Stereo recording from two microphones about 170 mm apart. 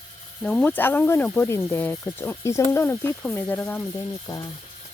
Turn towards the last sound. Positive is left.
turn(degrees=20)  # may be behind; listen again after turning